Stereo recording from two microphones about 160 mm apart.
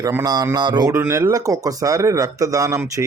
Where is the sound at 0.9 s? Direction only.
15° right (ahead or behind).